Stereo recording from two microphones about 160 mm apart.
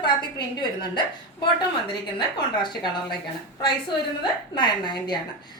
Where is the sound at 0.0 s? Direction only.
30° left (ahead or behind).